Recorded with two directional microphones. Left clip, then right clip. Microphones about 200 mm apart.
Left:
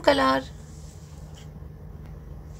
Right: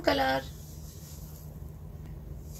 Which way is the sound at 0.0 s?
35° left (ahead or behind).